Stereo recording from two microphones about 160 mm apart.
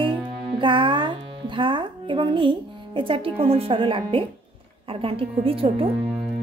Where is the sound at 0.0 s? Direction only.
30° right (ahead or behind).